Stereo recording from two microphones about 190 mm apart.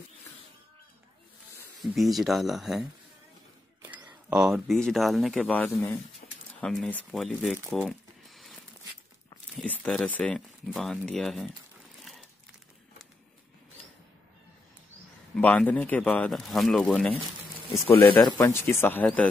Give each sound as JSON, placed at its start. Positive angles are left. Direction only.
{"t": 1.8, "sound": "speech", "side_deg": 0}
{"t": 4.3, "sound": "speech", "side_deg": -5}
{"t": 6.2, "sound": "a sound", "side_deg": 40}
{"t": 6.6, "sound": "speech", "side_deg": 5}
{"t": 9.6, "sound": "speech", "side_deg": 0}
{"t": 12.0, "sound": "crumpling", "side_deg": 0}
{"t": 15.3, "sound": "speech", "side_deg": 10}
{"t": 18.1, "sound": "speech", "side_deg": 10}